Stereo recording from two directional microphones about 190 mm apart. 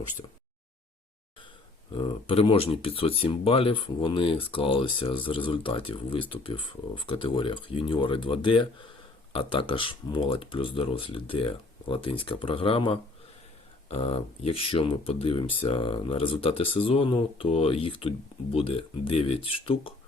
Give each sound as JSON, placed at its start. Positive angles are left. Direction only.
{"t": 1.9, "sound": "speech", "side_deg": 25}